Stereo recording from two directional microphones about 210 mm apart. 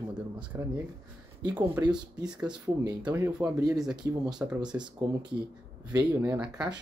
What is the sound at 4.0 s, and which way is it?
Speech, 20° right (ahead or behind).